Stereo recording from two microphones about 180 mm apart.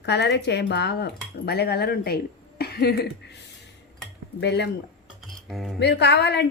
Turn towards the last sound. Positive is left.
turn(degrees=70)  # may be behind; listen again after turning